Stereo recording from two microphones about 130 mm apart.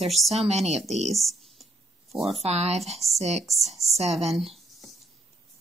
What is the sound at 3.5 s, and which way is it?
Speech, centre (ahead or behind).